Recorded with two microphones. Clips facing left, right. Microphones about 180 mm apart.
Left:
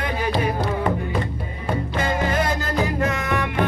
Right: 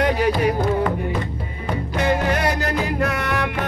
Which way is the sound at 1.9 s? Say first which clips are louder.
Right 3 dB; 65° right (ahead or behind).